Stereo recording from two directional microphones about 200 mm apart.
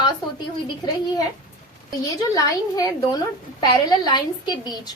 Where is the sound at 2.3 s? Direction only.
15° left (ahead or behind).